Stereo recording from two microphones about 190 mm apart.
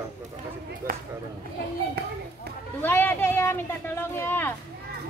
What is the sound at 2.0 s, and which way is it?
Speech, 55° right (ahead or behind).